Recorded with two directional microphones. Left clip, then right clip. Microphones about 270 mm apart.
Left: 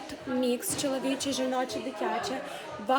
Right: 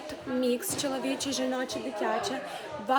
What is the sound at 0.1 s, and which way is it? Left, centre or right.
A woman's voice, centre.